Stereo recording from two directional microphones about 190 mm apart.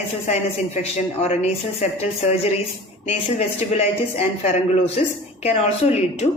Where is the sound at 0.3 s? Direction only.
35° left (ahead or behind).